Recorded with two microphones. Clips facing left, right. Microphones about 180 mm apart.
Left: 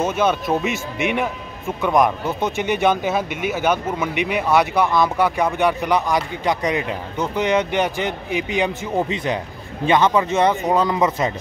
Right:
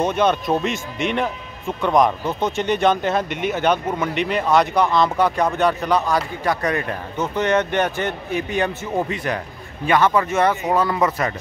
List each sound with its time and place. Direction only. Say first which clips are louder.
0.0 s speech: right 1 dB; 5° left (ahead or behind)